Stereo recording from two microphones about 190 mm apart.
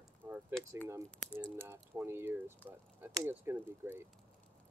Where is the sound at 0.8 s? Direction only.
15° right (ahead or behind).